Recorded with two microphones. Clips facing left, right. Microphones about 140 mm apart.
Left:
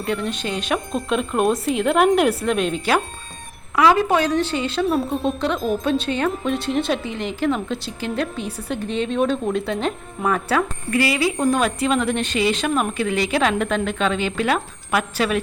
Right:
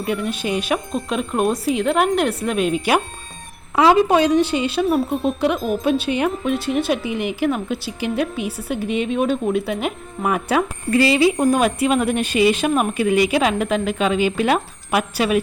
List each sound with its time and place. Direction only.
0.0 s speech: 5° right (ahead or behind)
3.8 s speech: 20° right (ahead or behind)
10.9 s speech: 25° right (ahead or behind)